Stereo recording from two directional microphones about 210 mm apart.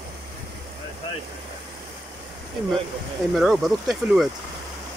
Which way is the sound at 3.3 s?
Centre (ahead or behind).